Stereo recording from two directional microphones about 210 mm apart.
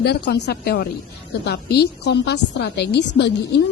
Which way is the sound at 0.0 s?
50° left (ahead or behind).